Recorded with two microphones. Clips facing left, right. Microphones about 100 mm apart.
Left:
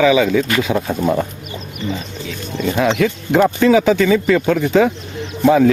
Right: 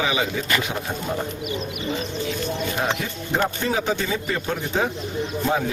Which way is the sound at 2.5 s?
90° left.